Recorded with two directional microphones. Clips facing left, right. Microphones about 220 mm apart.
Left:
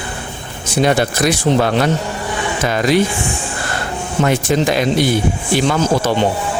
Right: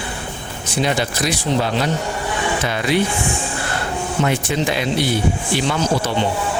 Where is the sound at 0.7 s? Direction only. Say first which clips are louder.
Left 5 dB; 50° left (ahead or behind).